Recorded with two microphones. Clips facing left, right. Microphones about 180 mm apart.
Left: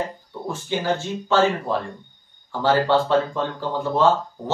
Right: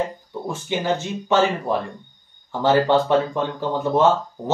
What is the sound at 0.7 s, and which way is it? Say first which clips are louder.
Speech: even; 15° right (ahead or behind).